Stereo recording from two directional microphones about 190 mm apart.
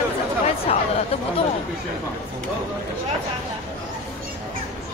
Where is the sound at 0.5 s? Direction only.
30° left (ahead or behind).